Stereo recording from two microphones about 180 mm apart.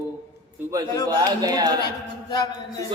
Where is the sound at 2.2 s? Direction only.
25° left (ahead or behind).